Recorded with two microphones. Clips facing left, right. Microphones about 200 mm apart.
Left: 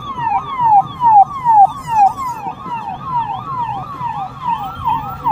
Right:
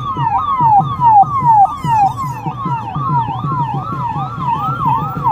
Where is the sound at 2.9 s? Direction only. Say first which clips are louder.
Right 1 dB; 15° left (ahead or behind).